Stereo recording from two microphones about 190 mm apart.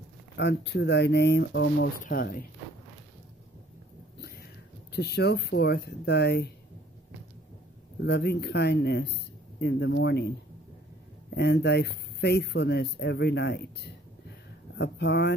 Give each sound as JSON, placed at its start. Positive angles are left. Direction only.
{"t": 0.4, "sound": "speech", "side_deg": 65}
{"t": 2.0, "sound": "speech", "side_deg": 50}
{"t": 4.9, "sound": "speech", "side_deg": 60}
{"t": 8.0, "sound": "speech", "side_deg": 60}